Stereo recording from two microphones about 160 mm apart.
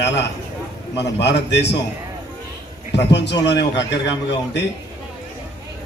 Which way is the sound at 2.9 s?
90° left.